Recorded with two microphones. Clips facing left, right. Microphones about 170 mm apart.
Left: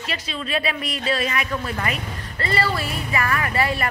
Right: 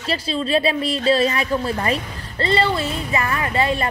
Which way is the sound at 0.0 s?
30° right (ahead or behind).